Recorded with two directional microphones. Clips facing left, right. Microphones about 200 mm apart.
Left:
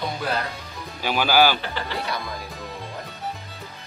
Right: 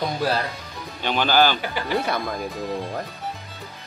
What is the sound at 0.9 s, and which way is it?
Speech, 5° left (ahead or behind).